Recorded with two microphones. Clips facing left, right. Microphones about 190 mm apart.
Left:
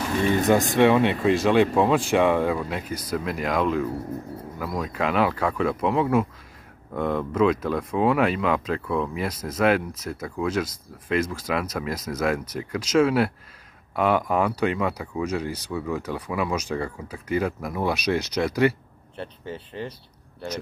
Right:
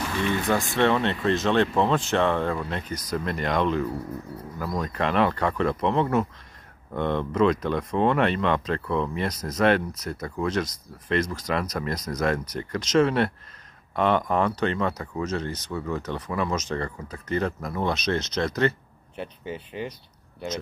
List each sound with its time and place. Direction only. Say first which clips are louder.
0.2 s speech: left 4 dB; 40° left (ahead or behind)
0.7 s speech: left 2 dB; 10° left (ahead or behind)
19.4 s speech: right 1 dB; 5° right (ahead or behind)